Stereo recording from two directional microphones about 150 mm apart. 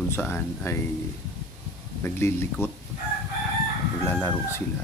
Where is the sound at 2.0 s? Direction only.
15° left (ahead or behind).